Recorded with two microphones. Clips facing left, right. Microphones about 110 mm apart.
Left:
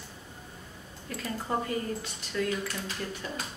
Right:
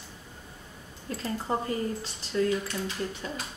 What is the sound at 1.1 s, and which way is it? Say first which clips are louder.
A woman's voice: right 2 dB; 30° right (ahead or behind).